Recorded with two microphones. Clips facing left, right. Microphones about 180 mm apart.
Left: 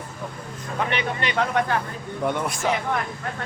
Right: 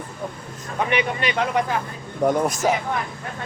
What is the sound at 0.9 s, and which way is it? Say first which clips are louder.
Speech: right 6 dB; 15° right (ahead or behind).